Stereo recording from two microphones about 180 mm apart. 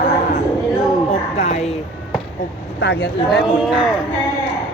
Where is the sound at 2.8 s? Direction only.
65° left (ahead or behind).